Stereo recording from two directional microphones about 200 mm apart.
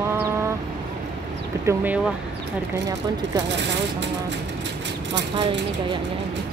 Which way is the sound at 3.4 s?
60° right (ahead or behind).